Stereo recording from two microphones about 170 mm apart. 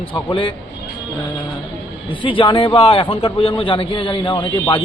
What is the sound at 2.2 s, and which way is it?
A man's voice, 30° left (ahead or behind).